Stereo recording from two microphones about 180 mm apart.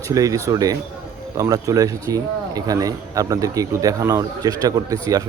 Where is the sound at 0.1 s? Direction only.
20° right (ahead or behind).